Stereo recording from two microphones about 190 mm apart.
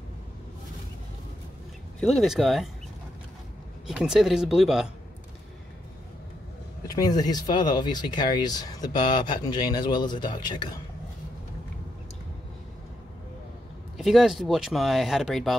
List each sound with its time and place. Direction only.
2.0 s speech: centre (ahead or behind)
3.8 s speech: 5° right (ahead or behind)
6.9 s speech: 20° left (ahead or behind)
13.9 s speech: centre (ahead or behind)